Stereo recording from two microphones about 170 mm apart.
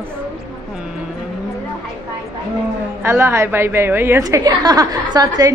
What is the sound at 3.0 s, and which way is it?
A woman's voice, 15° right (ahead or behind).